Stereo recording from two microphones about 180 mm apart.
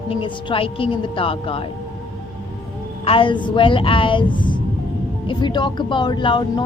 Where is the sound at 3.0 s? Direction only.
30° left (ahead or behind).